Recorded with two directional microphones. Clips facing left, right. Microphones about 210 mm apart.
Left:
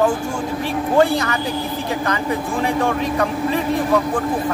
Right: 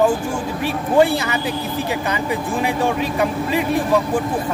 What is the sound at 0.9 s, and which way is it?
Speech, 10° right (ahead or behind).